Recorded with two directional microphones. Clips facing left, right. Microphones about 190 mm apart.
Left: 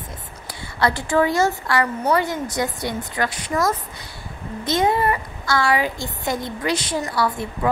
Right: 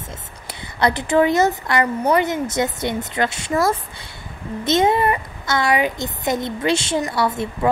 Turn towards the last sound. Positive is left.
turn(degrees=-25)  # may be behind; listen again after turning